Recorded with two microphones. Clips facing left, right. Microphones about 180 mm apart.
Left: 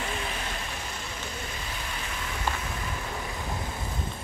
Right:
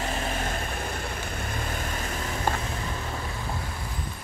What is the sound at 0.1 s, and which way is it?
Vehicle, 45° right (ahead or behind).